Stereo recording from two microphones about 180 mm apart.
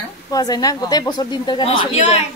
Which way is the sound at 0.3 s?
20° left (ahead or behind).